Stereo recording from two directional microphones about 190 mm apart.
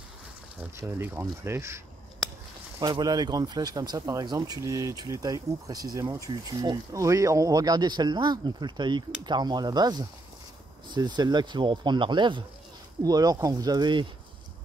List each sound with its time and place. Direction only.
0.6 s speech: 15° right (ahead or behind)
2.8 s speech: 20° right (ahead or behind)